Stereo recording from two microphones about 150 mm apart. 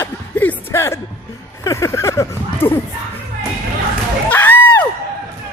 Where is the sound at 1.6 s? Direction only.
20° left (ahead or behind).